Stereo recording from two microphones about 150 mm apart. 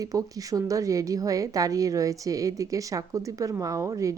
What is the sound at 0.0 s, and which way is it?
A woman's voice, 25° right (ahead or behind).